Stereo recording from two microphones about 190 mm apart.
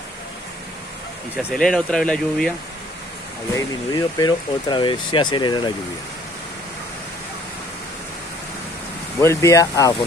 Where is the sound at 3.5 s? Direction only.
20° left (ahead or behind).